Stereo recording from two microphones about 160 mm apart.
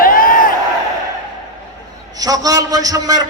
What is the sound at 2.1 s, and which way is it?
A man's voice, 20° right (ahead or behind).